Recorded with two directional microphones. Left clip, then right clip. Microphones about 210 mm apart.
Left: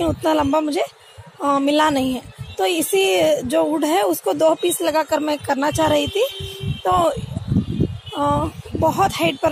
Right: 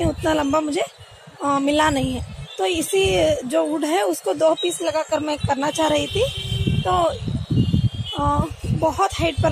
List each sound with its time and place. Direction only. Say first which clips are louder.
0.0 s speech: left 2 dB; 25° left (ahead or behind)